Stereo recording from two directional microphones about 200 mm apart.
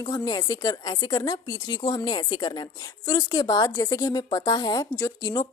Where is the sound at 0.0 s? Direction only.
20° left (ahead or behind).